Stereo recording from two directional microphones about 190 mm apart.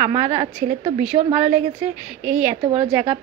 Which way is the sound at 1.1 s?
20° right (ahead or behind).